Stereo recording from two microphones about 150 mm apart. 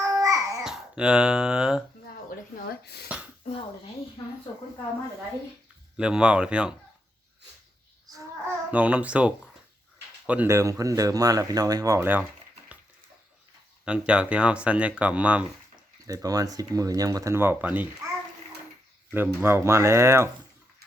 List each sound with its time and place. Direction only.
0.0 s babbling: 20° right (ahead or behind)
0.6 s speech: 5° right (ahead or behind)
2.6 s speech: 90° left
3.4 s speech: 35° left (ahead or behind)
6.0 s speech: 5° right (ahead or behind)
8.1 s babbling: 10° right (ahead or behind)
10.2 s speech: 10° right (ahead or behind)
13.8 s speech: 5° right (ahead or behind)
16.0 s speech: 25° right (ahead or behind)
19.1 s speech: 15° right (ahead or behind)